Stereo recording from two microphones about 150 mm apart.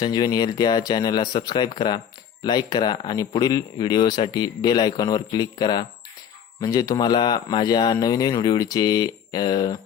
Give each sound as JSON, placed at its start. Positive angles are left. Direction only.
{"t": 0.0, "sound": "speech", "side_deg": 25}